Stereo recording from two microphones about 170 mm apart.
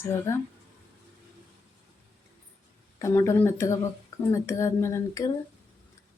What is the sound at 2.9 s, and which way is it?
Speech, 15° left (ahead or behind).